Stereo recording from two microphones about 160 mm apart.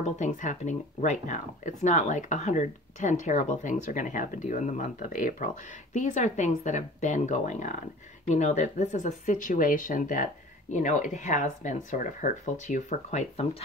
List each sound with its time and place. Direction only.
0.0 s speech: 50° left (ahead or behind)